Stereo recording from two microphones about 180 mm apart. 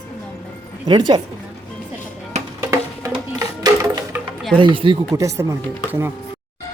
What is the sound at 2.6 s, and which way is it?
Music, 15° right (ahead or behind).